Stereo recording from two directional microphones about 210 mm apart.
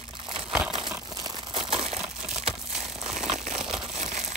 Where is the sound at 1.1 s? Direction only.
20° right (ahead or behind).